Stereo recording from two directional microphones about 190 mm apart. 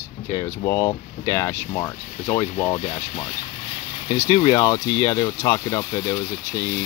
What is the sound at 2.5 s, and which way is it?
Speech, 35° left (ahead or behind).